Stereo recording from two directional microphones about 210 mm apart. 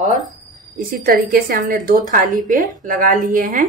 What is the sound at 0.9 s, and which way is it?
Speech, 45° right (ahead or behind).